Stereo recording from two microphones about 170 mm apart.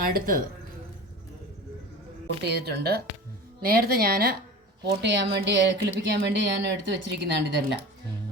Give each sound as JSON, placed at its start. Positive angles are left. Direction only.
{"t": 0.1, "sound": "a woman's voice", "side_deg": -55}
{"t": 2.4, "sound": "a woman's voice", "side_deg": -75}
{"t": 4.9, "sound": "a woman's voice", "side_deg": -90}